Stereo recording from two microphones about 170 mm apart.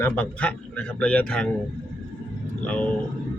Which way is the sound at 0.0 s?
10° left (ahead or behind).